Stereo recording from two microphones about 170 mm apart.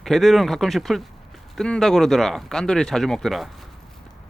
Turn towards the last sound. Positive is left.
turn(degrees=0)  # may be behind; listen again after turning